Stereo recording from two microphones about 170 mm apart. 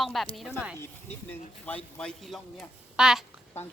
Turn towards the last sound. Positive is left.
turn(degrees=-5)  # may be behind; listen again after turning